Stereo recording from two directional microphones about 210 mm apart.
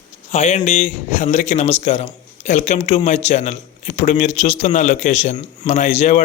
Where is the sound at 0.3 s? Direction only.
30° left (ahead or behind).